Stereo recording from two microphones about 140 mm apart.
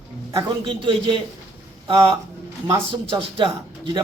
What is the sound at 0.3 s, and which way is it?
Speech, 40° right (ahead or behind).